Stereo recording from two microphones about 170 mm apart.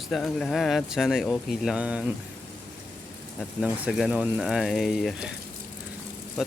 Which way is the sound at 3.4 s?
5° right (ahead or behind).